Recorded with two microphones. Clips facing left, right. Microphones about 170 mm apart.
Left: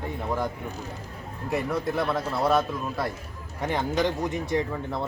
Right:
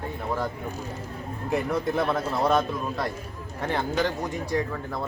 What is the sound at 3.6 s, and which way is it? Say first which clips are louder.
A man's voice: left 1 dB; 15° left (ahead or behind).